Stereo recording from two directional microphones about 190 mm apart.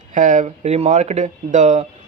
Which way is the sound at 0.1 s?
40° right (ahead or behind).